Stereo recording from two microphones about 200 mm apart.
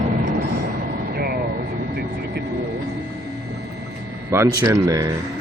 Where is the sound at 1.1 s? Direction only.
50° right (ahead or behind).